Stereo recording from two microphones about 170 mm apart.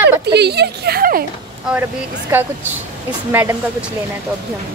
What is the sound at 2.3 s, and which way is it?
Speech, 10° right (ahead or behind).